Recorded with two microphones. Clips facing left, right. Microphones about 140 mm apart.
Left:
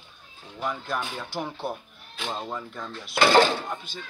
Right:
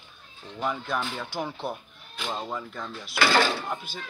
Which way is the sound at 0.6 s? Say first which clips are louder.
Right 1 dB; centre (ahead or behind).